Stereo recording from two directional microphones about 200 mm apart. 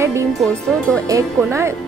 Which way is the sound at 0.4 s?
5° left (ahead or behind).